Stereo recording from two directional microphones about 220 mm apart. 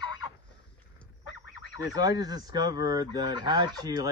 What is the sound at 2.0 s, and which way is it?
Speech, 15° right (ahead or behind).